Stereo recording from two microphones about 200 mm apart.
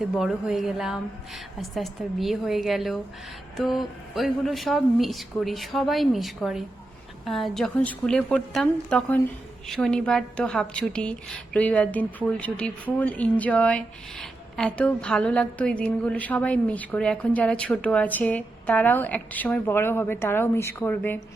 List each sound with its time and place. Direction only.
0.0 s a woman's voice: centre (ahead or behind)